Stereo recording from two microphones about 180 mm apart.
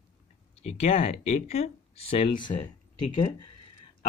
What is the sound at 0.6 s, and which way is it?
Speech, 35° left (ahead or behind).